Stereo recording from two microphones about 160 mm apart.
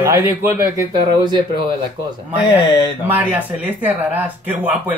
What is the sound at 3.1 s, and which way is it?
A man's voice, 10° right (ahead or behind).